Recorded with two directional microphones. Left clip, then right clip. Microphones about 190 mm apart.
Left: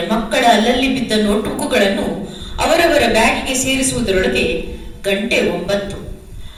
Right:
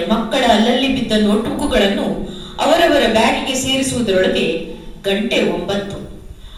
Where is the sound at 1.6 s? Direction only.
35° left (ahead or behind).